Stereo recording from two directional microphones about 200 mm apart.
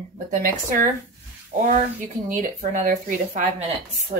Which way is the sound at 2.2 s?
40° right (ahead or behind).